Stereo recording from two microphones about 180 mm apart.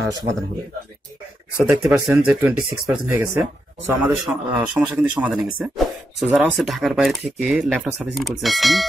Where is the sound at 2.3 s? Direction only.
5° right (ahead or behind).